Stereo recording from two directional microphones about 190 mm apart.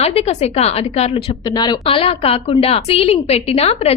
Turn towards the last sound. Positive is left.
turn(degrees=30)  # may be behind; listen again after turning